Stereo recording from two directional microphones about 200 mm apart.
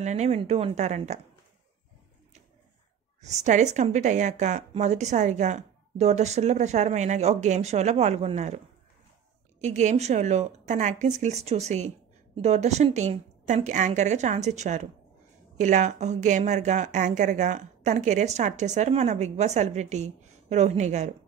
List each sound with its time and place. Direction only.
0.0 s a woman's voice: 35° right (ahead or behind)
3.2 s a woman's voice: 35° right (ahead or behind)
9.6 s a woman's voice: 35° right (ahead or behind)